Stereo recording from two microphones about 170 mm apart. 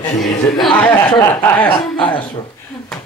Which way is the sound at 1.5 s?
10° left (ahead or behind).